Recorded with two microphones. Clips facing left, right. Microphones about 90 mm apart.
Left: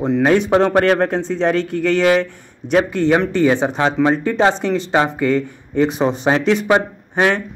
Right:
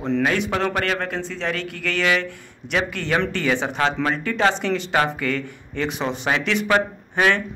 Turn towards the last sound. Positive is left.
turn(degrees=25)  # may be behind; listen again after turning